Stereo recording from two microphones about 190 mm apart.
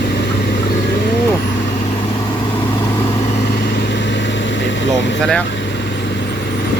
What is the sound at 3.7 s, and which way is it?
Vehicle, 65° left (ahead or behind).